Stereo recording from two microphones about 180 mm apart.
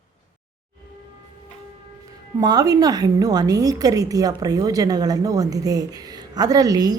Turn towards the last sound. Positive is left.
turn(degrees=-20)  # may be behind; listen again after turning